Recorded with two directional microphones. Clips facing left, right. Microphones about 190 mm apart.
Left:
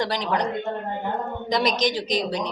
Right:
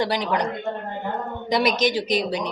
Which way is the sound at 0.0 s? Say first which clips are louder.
Right 1 dB; 10° right (ahead or behind).